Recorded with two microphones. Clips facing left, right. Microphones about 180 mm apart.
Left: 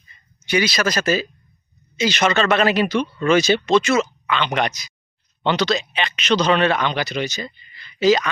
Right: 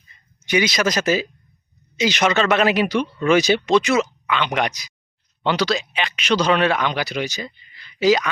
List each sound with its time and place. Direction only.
0.4 s speech: 20° right (ahead or behind)